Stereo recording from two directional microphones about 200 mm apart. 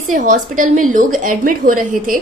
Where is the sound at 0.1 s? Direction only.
40° right (ahead or behind).